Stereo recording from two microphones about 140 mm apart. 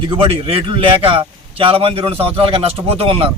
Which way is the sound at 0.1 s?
40° right (ahead or behind).